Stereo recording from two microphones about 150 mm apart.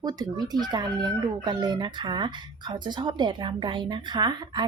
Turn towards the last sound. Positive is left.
turn(degrees=-30)  # may be behind; listen again after turning